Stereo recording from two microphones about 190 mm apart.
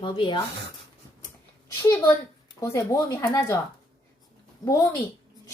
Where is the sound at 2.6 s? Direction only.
15° left (ahead or behind).